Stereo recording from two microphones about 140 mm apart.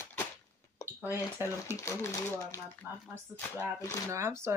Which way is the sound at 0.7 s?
25° left (ahead or behind).